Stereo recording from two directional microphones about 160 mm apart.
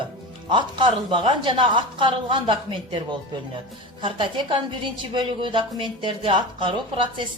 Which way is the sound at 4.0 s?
30° right (ahead or behind).